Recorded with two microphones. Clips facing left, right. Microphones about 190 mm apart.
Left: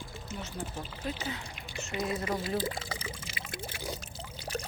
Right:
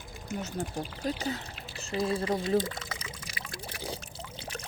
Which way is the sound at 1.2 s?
40° right (ahead or behind).